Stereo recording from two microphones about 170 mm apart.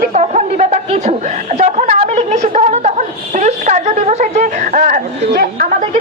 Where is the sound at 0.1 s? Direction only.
40° right (ahead or behind).